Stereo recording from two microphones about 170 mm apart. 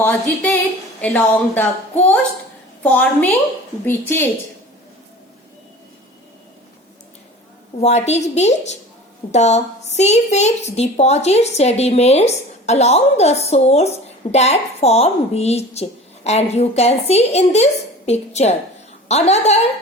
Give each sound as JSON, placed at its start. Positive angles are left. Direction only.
{"t": 1.0, "sound": "a woman's voice", "side_deg": 10}
{"t": 2.8, "sound": "a woman's voice", "side_deg": 10}
{"t": 7.8, "sound": "a woman's voice", "side_deg": 40}